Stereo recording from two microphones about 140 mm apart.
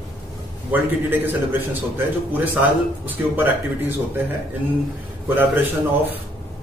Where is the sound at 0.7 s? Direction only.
15° right (ahead or behind).